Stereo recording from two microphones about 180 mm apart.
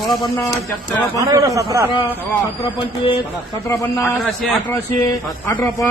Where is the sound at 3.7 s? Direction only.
15° left (ahead or behind).